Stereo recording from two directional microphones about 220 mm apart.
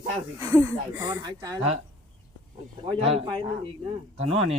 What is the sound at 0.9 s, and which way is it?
Speech, 10° right (ahead or behind).